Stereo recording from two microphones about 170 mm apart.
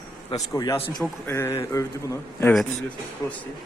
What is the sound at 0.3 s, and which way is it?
A man's voice, 20° left (ahead or behind).